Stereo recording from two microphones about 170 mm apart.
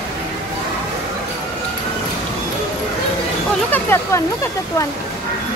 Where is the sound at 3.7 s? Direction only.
15° left (ahead or behind).